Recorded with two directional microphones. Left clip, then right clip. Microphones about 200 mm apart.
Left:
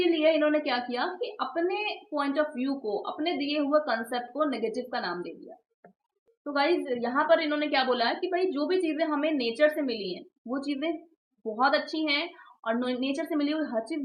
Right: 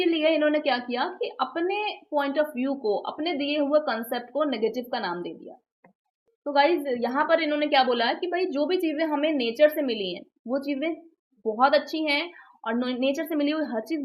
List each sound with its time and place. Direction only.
0.1 s a woman's voice: 35° right (ahead or behind)
6.4 s a woman's voice: 40° right (ahead or behind)